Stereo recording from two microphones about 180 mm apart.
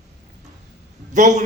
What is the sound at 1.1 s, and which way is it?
Speech, 45° right (ahead or behind).